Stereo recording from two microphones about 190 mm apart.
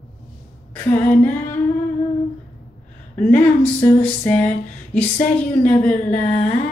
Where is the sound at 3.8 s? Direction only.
10° left (ahead or behind).